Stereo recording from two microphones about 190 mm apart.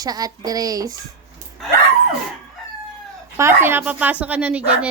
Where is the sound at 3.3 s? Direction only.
15° right (ahead or behind).